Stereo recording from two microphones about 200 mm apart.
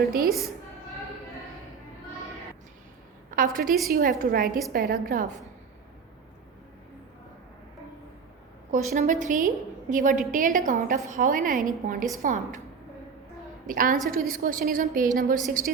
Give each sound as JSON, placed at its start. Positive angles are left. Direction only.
{"t": 0.0, "sound": "a woman's voice", "side_deg": -45}
{"t": 0.3, "sound": "a woman's voice", "side_deg": 0}
{"t": 3.3, "sound": "a woman's voice", "side_deg": -45}
{"t": 8.7, "sound": "a woman's voice", "side_deg": -40}
{"t": 13.7, "sound": "a woman's voice", "side_deg": -40}